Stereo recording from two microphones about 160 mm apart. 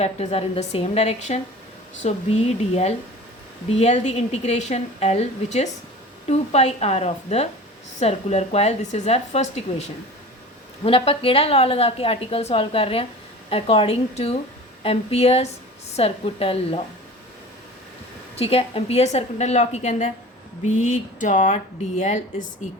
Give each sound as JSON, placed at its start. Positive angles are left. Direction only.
{"t": 0.0, "sound": "a woman's voice", "side_deg": 40}
{"t": 18.3, "sound": "a woman's voice", "side_deg": 40}